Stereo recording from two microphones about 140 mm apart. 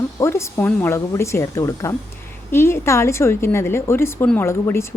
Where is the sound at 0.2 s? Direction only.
20° left (ahead or behind).